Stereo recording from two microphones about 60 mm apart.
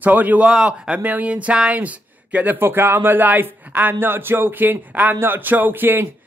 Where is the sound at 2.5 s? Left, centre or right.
Right.